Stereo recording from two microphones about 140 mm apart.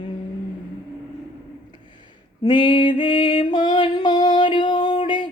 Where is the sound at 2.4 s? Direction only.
35° left (ahead or behind).